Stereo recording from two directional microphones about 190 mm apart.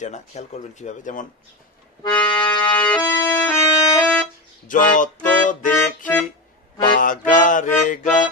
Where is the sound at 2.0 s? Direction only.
20° left (ahead or behind).